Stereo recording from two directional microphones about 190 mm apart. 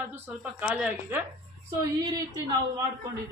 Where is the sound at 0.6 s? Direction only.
5° right (ahead or behind).